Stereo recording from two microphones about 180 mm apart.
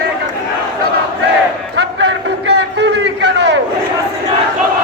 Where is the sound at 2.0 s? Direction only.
75° right (ahead or behind).